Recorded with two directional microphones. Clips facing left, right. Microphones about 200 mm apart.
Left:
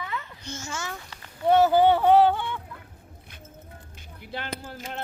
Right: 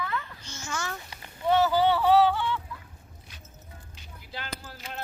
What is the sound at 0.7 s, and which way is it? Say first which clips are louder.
Speech: right 2 dB; 25° left (ahead or behind).